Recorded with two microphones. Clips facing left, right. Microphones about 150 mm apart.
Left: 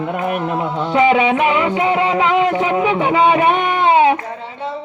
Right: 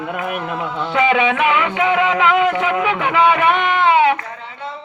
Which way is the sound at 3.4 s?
45° left (ahead or behind).